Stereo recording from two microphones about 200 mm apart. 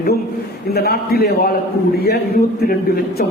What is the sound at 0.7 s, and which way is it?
A man's voice, 50° left (ahead or behind).